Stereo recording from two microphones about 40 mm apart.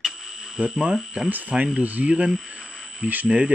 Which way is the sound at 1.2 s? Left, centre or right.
Right.